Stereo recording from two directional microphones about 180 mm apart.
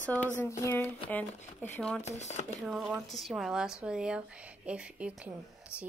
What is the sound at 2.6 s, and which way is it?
Speech, 5° right (ahead or behind).